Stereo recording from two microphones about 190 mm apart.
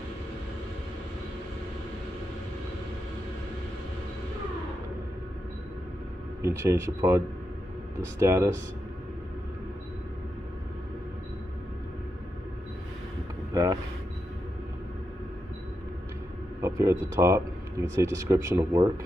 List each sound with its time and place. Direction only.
6.4 s speech: 15° right (ahead or behind)
13.5 s a sound: 20° right (ahead or behind)
16.6 s speech: 15° right (ahead or behind)